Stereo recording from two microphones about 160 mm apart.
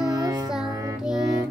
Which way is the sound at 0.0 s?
20° right (ahead or behind).